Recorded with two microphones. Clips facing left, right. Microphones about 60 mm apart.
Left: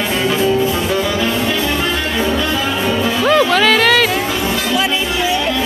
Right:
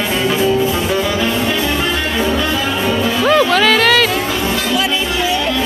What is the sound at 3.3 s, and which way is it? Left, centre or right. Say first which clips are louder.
Music: even; centre.